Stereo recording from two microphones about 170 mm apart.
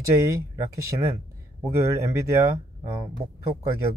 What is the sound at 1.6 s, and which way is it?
Speech, 15° right (ahead or behind).